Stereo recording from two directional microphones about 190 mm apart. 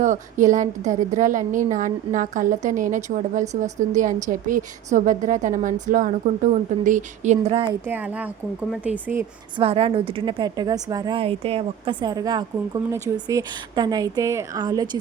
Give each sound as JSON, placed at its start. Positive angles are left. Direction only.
{"t": 0.0, "sound": "a woman's voice", "side_deg": -40}
{"t": 7.9, "sound": "speech", "side_deg": -10}
{"t": 9.6, "sound": "a woman's voice", "side_deg": -30}